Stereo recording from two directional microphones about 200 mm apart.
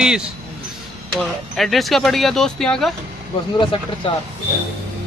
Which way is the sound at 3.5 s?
25° left (ahead or behind).